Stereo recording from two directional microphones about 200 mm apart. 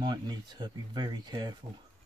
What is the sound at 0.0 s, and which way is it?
Speech, 20° right (ahead or behind).